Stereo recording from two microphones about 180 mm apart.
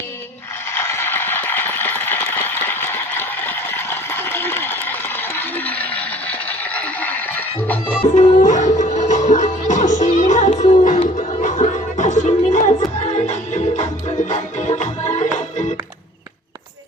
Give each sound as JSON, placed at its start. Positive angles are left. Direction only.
{"t": 0.7, "sound": "a sound", "side_deg": 15}
{"t": 6.7, "sound": "music", "side_deg": 10}
{"t": 7.9, "sound": "music", "side_deg": 40}